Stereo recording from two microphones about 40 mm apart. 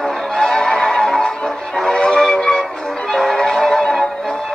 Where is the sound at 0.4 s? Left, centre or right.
Centre.